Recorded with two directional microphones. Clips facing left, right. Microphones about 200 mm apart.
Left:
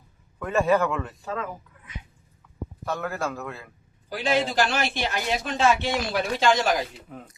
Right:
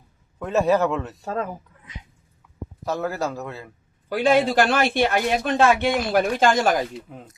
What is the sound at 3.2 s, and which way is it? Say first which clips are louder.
Speech: right 3 dB; 20° right (ahead or behind).